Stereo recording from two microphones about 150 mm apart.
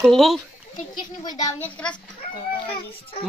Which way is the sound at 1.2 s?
25° left (ahead or behind).